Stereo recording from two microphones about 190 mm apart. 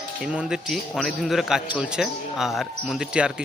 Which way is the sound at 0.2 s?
5° right (ahead or behind).